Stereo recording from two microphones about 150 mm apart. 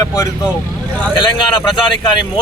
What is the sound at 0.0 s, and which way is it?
Speech, 25° left (ahead or behind).